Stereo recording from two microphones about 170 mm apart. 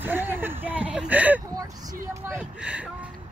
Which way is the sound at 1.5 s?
20° right (ahead or behind).